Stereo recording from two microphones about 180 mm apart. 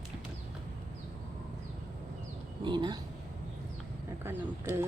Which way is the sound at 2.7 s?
25° right (ahead or behind).